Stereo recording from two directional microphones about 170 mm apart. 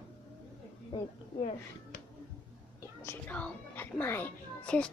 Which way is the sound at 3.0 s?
10° left (ahead or behind).